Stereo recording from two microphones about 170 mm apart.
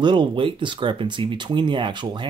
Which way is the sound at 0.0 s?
30° right (ahead or behind).